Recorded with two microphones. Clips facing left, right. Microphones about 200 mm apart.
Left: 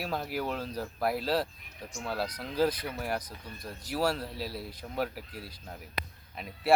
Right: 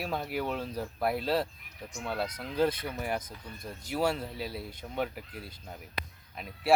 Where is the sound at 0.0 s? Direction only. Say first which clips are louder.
Even; centre (ahead or behind).